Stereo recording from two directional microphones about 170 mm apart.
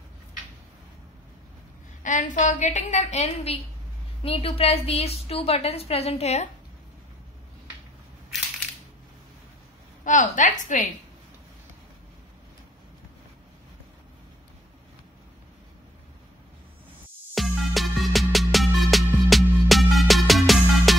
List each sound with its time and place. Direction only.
2.0 s a woman's voice: 50° left (ahead or behind)
10.0 s a woman's voice: 50° left (ahead or behind)
17.3 s music: centre (ahead or behind)